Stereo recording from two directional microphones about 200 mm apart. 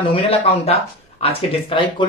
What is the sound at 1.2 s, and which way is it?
Speech, 25° left (ahead or behind).